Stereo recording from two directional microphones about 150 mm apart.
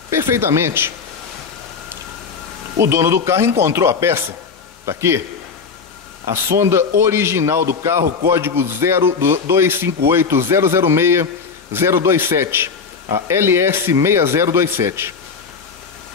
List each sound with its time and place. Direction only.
0.1 s speech: 15° right (ahead or behind)
2.8 s a man's voice: 20° right (ahead or behind)
6.2 s a man's voice: 20° right (ahead or behind)